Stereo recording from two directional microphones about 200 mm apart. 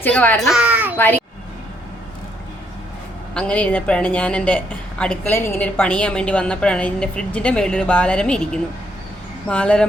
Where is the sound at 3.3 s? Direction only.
5° left (ahead or behind).